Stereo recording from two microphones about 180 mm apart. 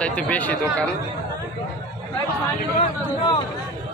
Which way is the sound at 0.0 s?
10° left (ahead or behind).